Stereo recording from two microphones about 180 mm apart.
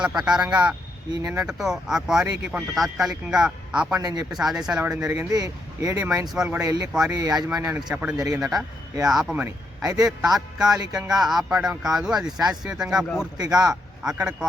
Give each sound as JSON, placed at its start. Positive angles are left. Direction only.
{"t": 0.0, "sound": "speech", "side_deg": -5}
{"t": 4.0, "sound": "speech", "side_deg": -20}
{"t": 4.3, "sound": "speech", "side_deg": 0}
{"t": 5.0, "sound": "speech", "side_deg": -20}
{"t": 6.3, "sound": "speech", "side_deg": -5}
{"t": 6.6, "sound": "speech", "side_deg": -20}
{"t": 7.5, "sound": "speech", "side_deg": -10}
{"t": 8.4, "sound": "speech", "side_deg": -5}